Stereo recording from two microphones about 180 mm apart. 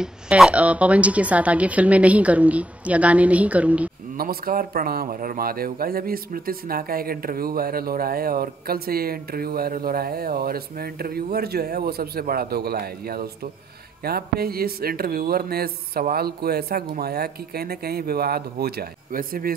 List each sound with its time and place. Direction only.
0.0 s a woman's voice: 5° right (ahead or behind)
4.2 s speech: 55° right (ahead or behind)